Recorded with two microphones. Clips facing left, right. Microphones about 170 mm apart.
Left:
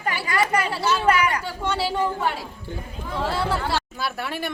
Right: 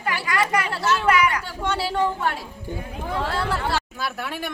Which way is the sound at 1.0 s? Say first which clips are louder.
Even; 35° left (ahead or behind).